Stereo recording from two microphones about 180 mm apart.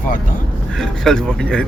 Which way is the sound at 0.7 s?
5° left (ahead or behind).